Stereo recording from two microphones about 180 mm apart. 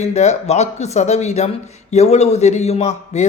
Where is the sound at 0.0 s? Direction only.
40° left (ahead or behind).